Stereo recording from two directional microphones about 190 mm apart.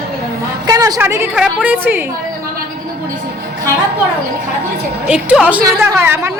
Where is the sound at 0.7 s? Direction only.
20° right (ahead or behind).